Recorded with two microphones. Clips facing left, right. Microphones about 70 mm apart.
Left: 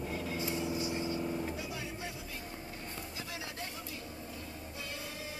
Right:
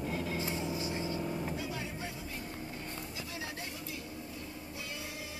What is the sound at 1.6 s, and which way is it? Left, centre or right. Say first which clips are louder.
Vehicle: right 2 dB; right.